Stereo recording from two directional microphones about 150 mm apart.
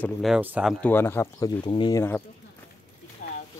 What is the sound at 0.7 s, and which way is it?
Speech, 10° left (ahead or behind).